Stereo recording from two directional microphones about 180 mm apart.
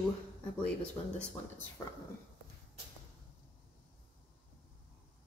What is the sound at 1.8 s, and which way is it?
Speech, 15° left (ahead or behind).